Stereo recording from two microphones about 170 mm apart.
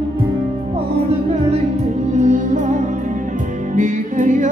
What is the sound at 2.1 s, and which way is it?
Music, 45° right (ahead or behind).